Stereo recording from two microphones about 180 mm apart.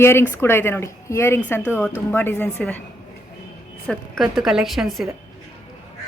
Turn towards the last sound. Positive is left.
turn(degrees=0)  # may be behind; listen again after turning